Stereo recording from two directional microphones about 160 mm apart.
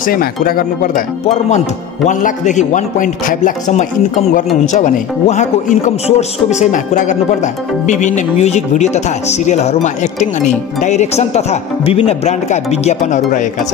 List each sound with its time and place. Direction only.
0.0 s speech: 65° left (ahead or behind)
2.0 s speech: 50° left (ahead or behind)